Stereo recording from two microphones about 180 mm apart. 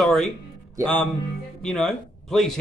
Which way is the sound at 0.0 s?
5° left (ahead or behind).